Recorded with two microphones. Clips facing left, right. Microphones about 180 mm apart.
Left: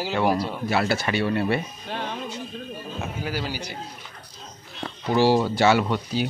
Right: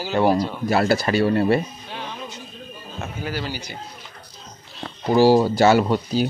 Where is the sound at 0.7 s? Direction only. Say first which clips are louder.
Right 5 dB; 40° right (ahead or behind).